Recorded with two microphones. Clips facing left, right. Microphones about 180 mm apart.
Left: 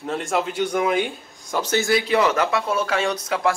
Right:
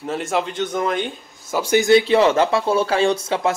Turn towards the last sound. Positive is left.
turn(degrees=-25)  # may be behind; listen again after turning